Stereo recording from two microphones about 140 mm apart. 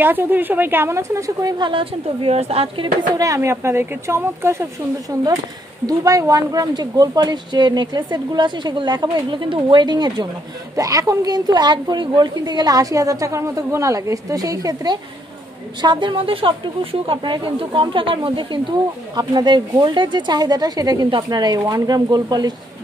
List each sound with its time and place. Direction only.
0.0 s a woman's voice: 15° right (ahead or behind); by 2.9 s 45° right (ahead or behind)
3.2 s a woman's voice: 20° right (ahead or behind)